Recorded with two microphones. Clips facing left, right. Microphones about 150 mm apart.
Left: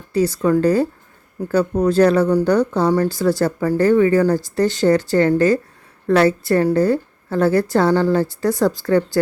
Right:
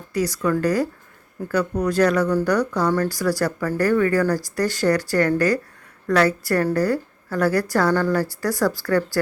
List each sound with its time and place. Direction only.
0.1 s a woman's voice: 30° left (ahead or behind)